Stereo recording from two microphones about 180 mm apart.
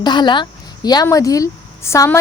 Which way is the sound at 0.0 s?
25° left (ahead or behind).